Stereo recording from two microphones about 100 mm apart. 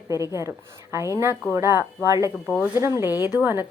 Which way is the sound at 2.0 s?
35° right (ahead or behind).